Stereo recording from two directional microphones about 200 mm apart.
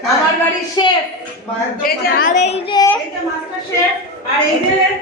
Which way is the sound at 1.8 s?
45° left (ahead or behind).